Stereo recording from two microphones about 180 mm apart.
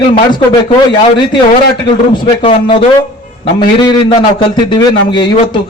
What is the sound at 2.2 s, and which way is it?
A man's voice, 30° left (ahead or behind).